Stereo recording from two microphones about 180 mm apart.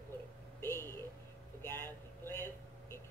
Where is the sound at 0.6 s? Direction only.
15° left (ahead or behind).